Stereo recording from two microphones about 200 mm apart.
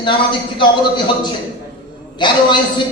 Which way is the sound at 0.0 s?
25° left (ahead or behind).